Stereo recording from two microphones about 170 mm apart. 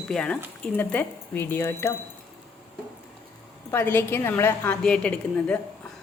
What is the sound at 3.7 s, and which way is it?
A woman's voice, 15° left (ahead or behind).